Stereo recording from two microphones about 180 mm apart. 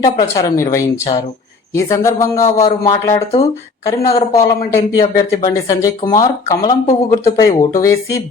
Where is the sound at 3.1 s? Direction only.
35° left (ahead or behind).